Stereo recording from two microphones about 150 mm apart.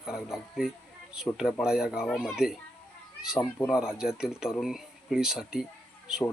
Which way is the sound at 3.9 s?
5° right (ahead or behind).